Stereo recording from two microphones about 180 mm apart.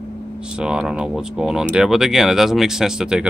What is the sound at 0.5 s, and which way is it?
Speech, 5° right (ahead or behind).